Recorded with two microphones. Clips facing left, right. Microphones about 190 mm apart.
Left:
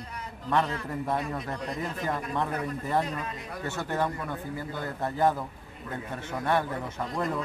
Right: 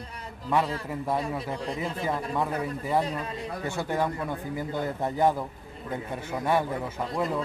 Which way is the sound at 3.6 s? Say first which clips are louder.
Right 1 dB; 10° right (ahead or behind).